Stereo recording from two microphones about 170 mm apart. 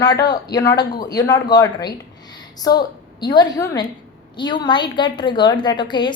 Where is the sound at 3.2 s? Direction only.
25° left (ahead or behind).